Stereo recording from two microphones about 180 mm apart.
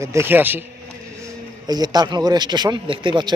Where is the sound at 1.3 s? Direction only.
20° right (ahead or behind).